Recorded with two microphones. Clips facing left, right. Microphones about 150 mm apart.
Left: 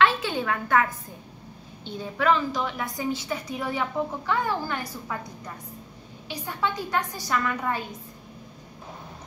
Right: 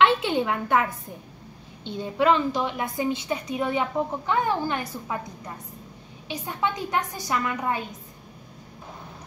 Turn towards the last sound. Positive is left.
turn(degrees=-15)  # may be behind; listen again after turning